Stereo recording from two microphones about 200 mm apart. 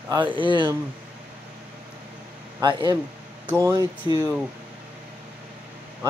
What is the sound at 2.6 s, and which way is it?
Speech, 20° right (ahead or behind).